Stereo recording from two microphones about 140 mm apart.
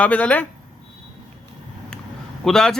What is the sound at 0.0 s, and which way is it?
Speech, 10° left (ahead or behind).